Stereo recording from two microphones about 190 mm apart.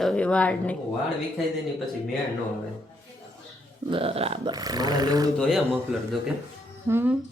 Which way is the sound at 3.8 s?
30° right (ahead or behind).